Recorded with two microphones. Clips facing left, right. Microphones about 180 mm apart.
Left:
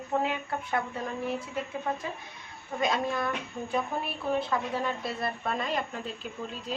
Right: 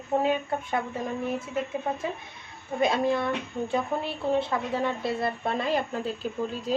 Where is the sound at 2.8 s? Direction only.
30° right (ahead or behind).